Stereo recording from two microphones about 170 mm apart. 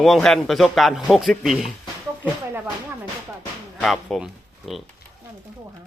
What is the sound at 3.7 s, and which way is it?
Speech, centre (ahead or behind).